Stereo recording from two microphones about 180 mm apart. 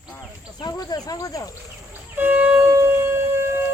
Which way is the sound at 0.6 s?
20° left (ahead or behind).